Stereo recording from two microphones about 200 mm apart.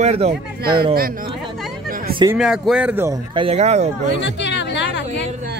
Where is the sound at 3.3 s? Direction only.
30° right (ahead or behind).